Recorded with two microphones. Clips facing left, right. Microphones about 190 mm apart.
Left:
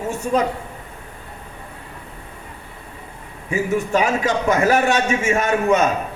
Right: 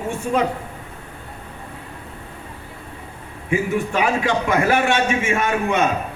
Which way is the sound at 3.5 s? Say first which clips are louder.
Left 1 dB; 40° left (ahead or behind).